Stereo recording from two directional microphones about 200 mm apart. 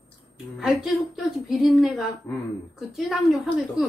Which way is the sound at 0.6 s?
Centre (ahead or behind).